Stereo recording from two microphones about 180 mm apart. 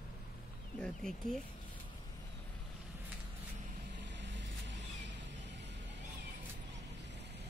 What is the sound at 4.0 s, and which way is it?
Vehicle, 80° right.